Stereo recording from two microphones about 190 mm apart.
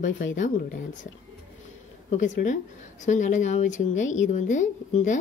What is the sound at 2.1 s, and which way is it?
Speech, 40° left (ahead or behind).